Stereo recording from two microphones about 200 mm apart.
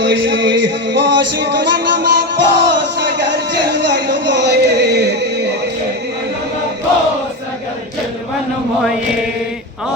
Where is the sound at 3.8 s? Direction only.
60° right (ahead or behind).